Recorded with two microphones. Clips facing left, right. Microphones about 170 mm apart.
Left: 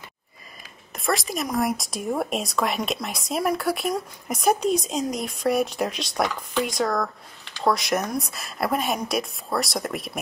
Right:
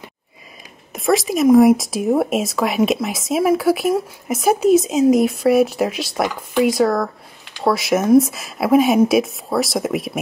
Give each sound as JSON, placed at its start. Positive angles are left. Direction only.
{"t": 0.9, "sound": "speech", "side_deg": 0}